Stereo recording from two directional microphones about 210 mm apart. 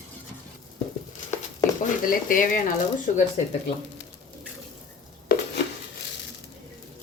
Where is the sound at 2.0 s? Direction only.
40° left (ahead or behind).